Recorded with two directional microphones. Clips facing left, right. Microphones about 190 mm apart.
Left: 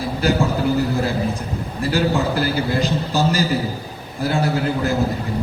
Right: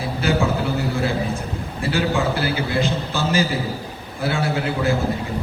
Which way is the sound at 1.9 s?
40° left (ahead or behind).